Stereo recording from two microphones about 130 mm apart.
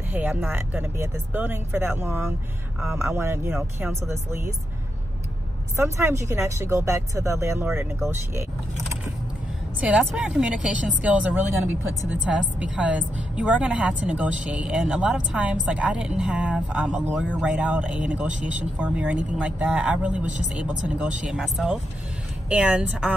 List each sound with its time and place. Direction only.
0.1 s speech: 15° right (ahead or behind)
5.8 s speech: 20° right (ahead or behind)
9.8 s speech: 5° right (ahead or behind)